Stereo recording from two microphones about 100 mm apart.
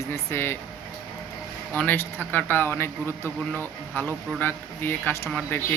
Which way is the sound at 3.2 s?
30° right (ahead or behind).